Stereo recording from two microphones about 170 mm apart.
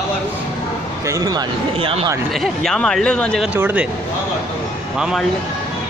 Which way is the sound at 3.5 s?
10° right (ahead or behind).